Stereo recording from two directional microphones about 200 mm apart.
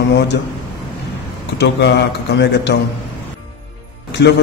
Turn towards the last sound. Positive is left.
turn(degrees=55)  # may be behind; listen again after turning